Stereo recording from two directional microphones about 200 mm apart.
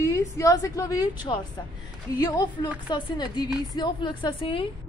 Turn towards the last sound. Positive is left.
turn(degrees=25)  # may be behind; listen again after turning